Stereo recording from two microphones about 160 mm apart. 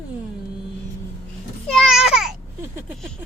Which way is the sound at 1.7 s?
Centre (ahead or behind).